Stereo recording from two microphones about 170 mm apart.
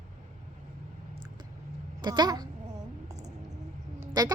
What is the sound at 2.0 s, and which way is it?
Speech, 25° right (ahead or behind).